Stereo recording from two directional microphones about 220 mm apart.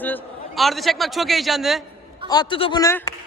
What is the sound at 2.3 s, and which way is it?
Speech, 20° left (ahead or behind).